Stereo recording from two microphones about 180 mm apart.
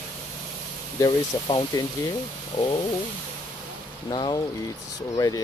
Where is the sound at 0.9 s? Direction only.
25° left (ahead or behind).